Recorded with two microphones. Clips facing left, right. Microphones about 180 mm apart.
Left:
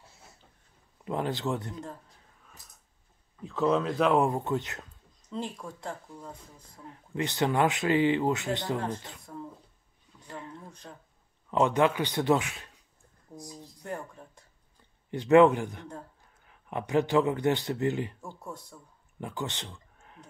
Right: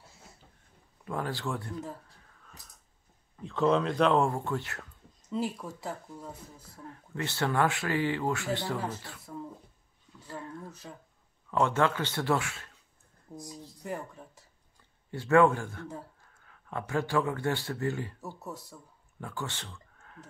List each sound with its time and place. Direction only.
1.0 s speech: 20° left (ahead or behind)
3.4 s speech: centre (ahead or behind)
4.2 s speech: 20° left (ahead or behind)
5.3 s speech: 5° right (ahead or behind)
6.8 s speech: 20° left (ahead or behind)
10.7 s speech: 5° right (ahead or behind)
11.5 s speech: 15° left (ahead or behind)
13.4 s speech: 5° right (ahead or behind)
15.0 s speech: 20° left (ahead or behind)
18.4 s speech: 5° right (ahead or behind)
19.1 s speech: 20° left (ahead or behind)